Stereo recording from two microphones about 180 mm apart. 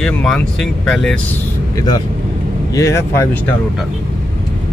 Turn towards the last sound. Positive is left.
turn(degrees=15)  # may be behind; listen again after turning